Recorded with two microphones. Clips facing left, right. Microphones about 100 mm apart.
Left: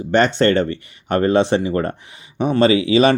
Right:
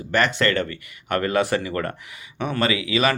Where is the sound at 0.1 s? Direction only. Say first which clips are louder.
Left 6 dB; 30° left (ahead or behind).